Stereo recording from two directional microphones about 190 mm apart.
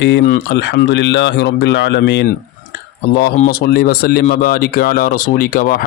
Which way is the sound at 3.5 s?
55° left (ahead or behind).